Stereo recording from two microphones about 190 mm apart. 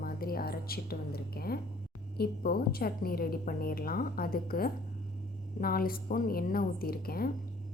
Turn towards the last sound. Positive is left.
turn(degrees=50)  # may be behind; listen again after turning